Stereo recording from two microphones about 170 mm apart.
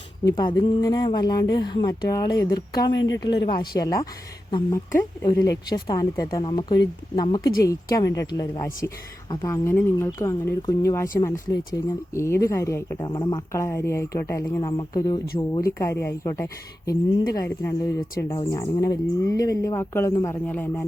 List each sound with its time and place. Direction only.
0.3 s speech: 25° left (ahead or behind)
2.9 s speech: 90° left
3.2 s speech: 25° left (ahead or behind)
18.3 s speech: 30° left (ahead or behind)
18.6 s speech: 20° left (ahead or behind)